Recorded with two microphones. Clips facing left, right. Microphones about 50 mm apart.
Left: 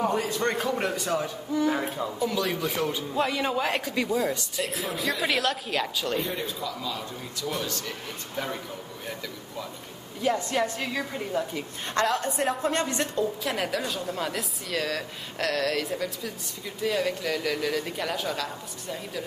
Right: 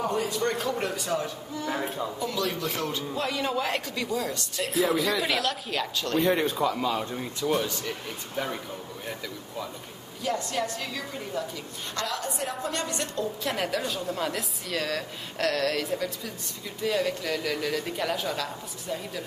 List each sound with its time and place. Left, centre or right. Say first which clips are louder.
0.0 s a man's voice: left 1 dB; centre
0.7 s speech: left 1 dB; centre
4.6 s a woman's voice: right 7 dB; centre
6.1 s speech: right 10 dB; right
6.4 s speech: right 7 dB; right
7.4 s a man's voice: right 4 dB; centre
10.2 s a woman's voice: left 3 dB; centre
12.2 s a woman's voice: left 5 dB; left
13.1 s a woman's voice: left 2 dB; centre